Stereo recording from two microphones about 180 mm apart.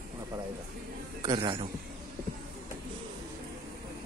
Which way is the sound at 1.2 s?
25° right (ahead or behind).